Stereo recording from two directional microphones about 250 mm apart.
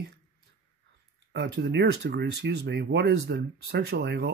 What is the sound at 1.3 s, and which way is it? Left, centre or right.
Speech, right.